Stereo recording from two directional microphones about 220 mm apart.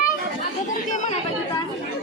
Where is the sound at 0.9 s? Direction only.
35° left (ahead or behind).